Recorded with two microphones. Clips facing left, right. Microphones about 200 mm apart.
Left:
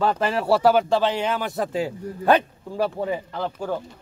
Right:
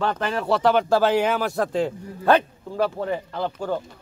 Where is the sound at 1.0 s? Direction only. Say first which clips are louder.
Right 3 dB; 5° right (ahead or behind).